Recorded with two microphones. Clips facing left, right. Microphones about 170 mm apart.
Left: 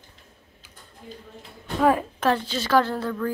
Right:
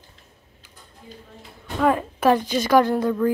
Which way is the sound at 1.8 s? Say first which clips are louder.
Even; 5° left (ahead or behind).